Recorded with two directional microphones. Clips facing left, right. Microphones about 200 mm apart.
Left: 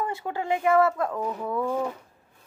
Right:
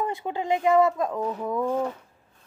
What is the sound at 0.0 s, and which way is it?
Speech, 15° right (ahead or behind).